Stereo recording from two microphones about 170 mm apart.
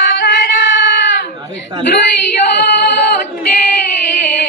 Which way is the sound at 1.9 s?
70° left (ahead or behind).